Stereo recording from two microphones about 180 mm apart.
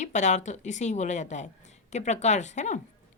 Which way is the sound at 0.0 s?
40° left (ahead or behind).